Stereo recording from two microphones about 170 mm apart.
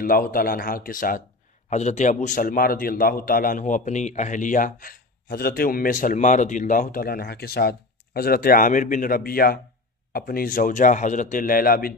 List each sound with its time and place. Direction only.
0.0 s a man's voice: 55° left (ahead or behind)
1.7 s a man's voice: 40° left (ahead or behind); by 11.9 s 60° left (ahead or behind)